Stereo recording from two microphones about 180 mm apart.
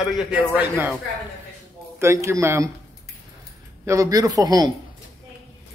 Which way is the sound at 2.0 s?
15° right (ahead or behind).